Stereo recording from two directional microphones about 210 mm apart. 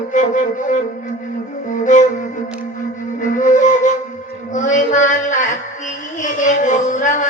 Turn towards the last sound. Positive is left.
turn(degrees=35)  # may be behind; listen again after turning